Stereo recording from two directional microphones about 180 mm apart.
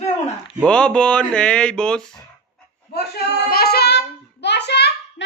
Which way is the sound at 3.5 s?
60° left (ahead or behind).